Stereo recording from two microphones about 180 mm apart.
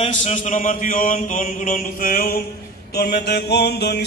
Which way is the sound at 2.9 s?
60° left (ahead or behind).